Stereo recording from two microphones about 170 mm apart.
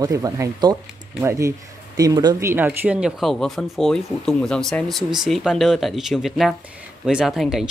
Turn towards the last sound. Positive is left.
turn(degrees=0)  # may be behind; listen again after turning